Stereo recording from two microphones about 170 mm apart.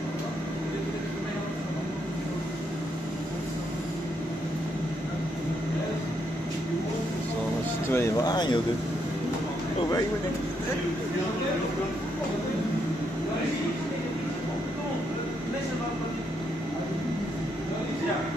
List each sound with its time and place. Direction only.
7.9 s speech: 25° left (ahead or behind)